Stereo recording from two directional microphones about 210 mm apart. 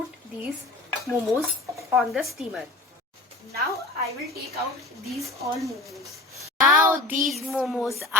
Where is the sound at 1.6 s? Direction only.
15° right (ahead or behind).